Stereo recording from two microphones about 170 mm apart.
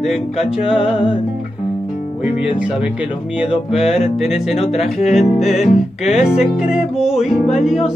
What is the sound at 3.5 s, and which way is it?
Music, 5° right (ahead or behind).